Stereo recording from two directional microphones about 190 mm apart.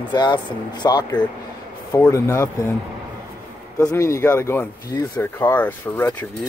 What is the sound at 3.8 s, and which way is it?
Speech, 15° left (ahead or behind).